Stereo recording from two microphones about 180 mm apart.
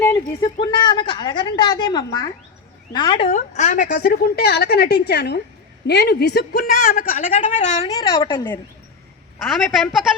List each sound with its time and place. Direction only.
0.6 s a sound: 25° left (ahead or behind)
2.9 s a woman's voice: 25° left (ahead or behind)
3.2 s a woman's voice: 40° left (ahead or behind)
7.9 s a woman's voice: 20° left (ahead or behind)
9.4 s a woman's voice: centre (ahead or behind)